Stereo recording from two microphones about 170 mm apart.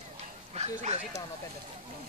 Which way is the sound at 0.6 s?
40° right (ahead or behind).